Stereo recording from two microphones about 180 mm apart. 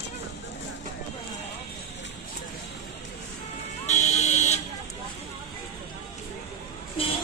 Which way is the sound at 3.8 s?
40° left (ahead or behind).